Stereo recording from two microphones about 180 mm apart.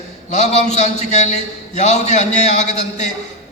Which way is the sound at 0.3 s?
40° left (ahead or behind).